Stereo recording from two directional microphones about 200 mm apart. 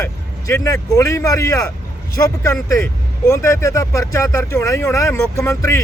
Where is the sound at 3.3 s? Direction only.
15° left (ahead or behind).